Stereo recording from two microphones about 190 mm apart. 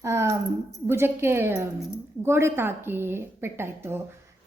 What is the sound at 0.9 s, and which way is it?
A woman's voice, 10° right (ahead or behind).